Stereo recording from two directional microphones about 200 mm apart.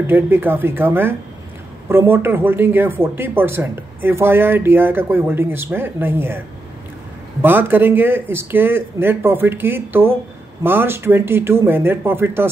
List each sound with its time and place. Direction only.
0.0 s speech: 10° right (ahead or behind)
7.4 s speech: 10° right (ahead or behind)